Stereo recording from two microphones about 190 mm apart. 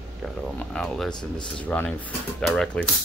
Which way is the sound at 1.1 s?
25° left (ahead or behind).